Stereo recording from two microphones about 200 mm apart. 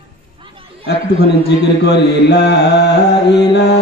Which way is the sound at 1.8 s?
55° left (ahead or behind).